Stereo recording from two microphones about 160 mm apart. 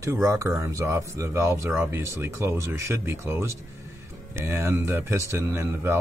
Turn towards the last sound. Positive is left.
turn(degrees=-15)  # may be behind; listen again after turning